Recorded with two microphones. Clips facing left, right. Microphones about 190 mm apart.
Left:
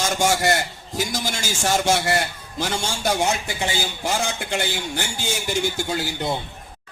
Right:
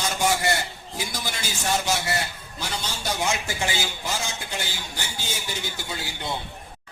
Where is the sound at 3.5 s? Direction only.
15° left (ahead or behind).